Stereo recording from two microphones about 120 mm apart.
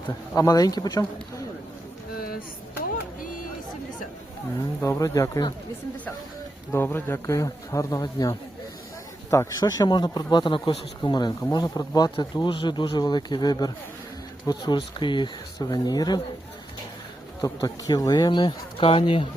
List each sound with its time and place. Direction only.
0.3 s speech: 30° left (ahead or behind)
4.8 s speech: 25° left (ahead or behind)
6.7 s speech: 15° left (ahead or behind); by 16.2 s 35° left (ahead or behind)
17.4 s speech: 30° left (ahead or behind); by 19.3 s 45° left (ahead or behind)